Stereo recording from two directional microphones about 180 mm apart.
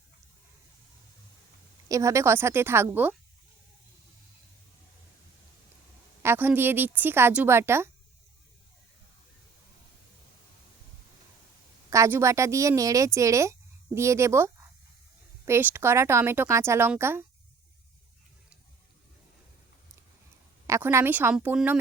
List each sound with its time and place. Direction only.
1.9 s speech: 15° right (ahead or behind)
6.2 s speech: 10° right (ahead or behind)
11.9 s speech: 15° right (ahead or behind)
20.7 s speech: 15° right (ahead or behind)